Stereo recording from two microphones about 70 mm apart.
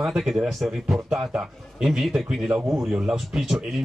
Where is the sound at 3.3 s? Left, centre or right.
Centre.